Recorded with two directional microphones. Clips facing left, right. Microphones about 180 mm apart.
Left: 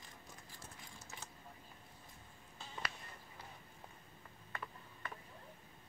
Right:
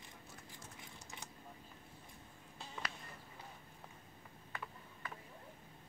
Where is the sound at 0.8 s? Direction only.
15° right (ahead or behind).